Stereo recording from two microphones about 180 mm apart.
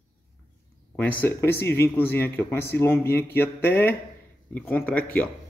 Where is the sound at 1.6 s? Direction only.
15° left (ahead or behind).